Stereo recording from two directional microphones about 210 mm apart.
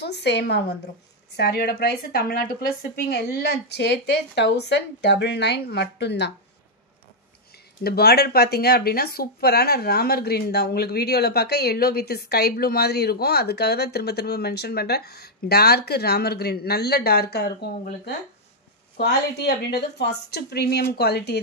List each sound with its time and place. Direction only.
0.0 s speech: 55° left (ahead or behind)
7.8 s speech: 50° left (ahead or behind)